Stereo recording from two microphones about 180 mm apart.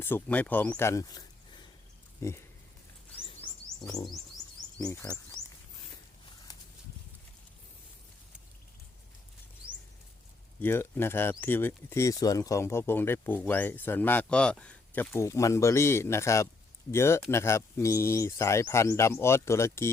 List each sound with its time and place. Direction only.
0.0 s speech: 10° left (ahead or behind)
2.2 s speech: 15° left (ahead or behind)
3.2 s a sound: 25° left (ahead or behind)
4.8 s speech: 20° left (ahead or behind)
10.6 s speech: 10° left (ahead or behind)